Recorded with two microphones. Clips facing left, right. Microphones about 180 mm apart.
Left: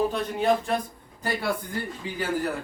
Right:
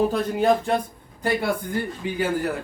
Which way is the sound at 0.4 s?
30° right (ahead or behind).